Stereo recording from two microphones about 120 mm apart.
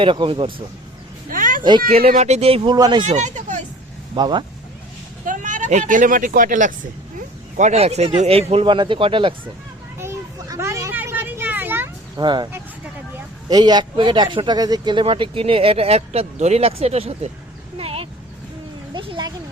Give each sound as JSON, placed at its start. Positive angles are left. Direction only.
{"t": 0.0, "sound": "speech", "side_deg": -45}
{"t": 1.9, "sound": "speech", "side_deg": -65}
{"t": 2.6, "sound": "speech", "side_deg": -35}
{"t": 3.0, "sound": "speech", "side_deg": -80}
{"t": 4.1, "sound": "speech", "side_deg": -40}
{"t": 5.2, "sound": "speech", "side_deg": -90}
{"t": 7.5, "sound": "speech", "side_deg": -75}
{"t": 10.0, "sound": "children playing", "side_deg": -20}
{"t": 10.9, "sound": "vehicle", "side_deg": -15}
{"t": 12.1, "sound": "speech", "side_deg": -35}
{"t": 13.5, "sound": "speech", "side_deg": -35}
{"t": 17.7, "sound": "a sound", "side_deg": -55}
{"t": 18.9, "sound": "speech", "side_deg": -40}